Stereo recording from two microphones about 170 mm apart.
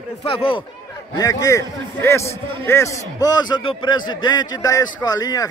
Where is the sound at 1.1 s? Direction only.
20° left (ahead or behind).